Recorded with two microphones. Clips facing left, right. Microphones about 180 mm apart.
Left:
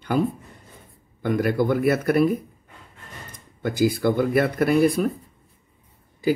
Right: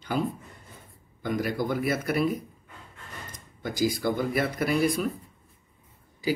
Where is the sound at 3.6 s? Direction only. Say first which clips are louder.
Left 6 dB; 55° left (ahead or behind).